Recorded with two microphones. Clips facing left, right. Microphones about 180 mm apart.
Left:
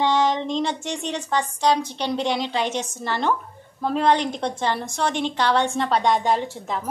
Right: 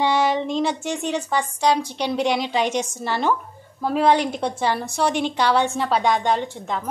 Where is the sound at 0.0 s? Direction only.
10° right (ahead or behind).